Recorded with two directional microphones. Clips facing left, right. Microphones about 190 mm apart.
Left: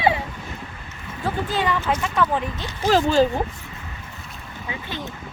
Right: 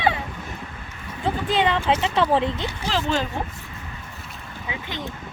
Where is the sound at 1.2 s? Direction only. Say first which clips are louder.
Right 2 dB; 25° right (ahead or behind).